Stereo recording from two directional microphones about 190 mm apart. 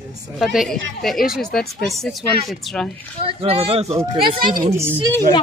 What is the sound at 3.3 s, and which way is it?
Speech, 30° right (ahead or behind).